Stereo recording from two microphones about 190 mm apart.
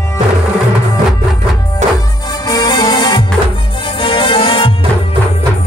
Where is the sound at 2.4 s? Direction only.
20° left (ahead or behind).